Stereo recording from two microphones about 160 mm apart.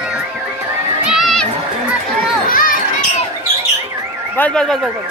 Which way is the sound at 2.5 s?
60° left (ahead or behind).